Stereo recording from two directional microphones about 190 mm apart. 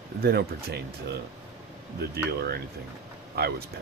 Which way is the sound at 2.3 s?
55° right (ahead or behind).